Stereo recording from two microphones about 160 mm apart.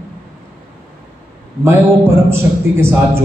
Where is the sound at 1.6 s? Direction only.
15° right (ahead or behind).